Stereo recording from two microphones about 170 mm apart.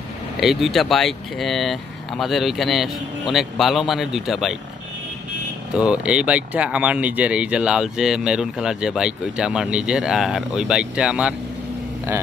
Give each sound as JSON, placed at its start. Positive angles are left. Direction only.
{"t": 0.4, "sound": "speech", "side_deg": 0}
{"t": 5.8, "sound": "speech", "side_deg": -5}